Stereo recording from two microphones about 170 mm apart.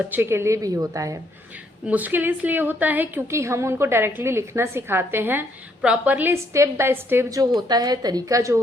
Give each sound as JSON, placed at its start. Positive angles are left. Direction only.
{"t": 0.0, "sound": "a woman's voice", "side_deg": -10}